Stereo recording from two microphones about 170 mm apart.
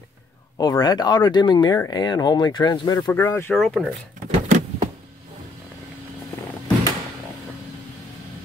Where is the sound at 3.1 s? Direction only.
10° left (ahead or behind).